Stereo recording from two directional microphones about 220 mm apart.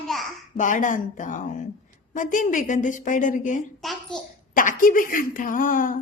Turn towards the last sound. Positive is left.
turn(degrees=40)  # may be behind; listen again after turning